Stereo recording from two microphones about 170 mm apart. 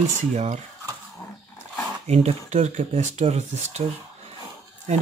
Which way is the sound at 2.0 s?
40° right (ahead or behind).